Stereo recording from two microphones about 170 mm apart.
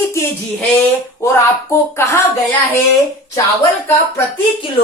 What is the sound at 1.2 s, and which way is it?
Speech, 15° left (ahead or behind).